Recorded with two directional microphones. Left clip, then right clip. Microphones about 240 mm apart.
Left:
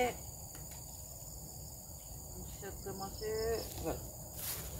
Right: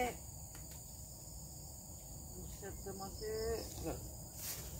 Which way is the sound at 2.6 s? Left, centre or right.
Centre.